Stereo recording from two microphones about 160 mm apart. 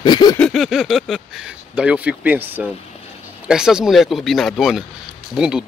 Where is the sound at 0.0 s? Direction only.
25° left (ahead or behind).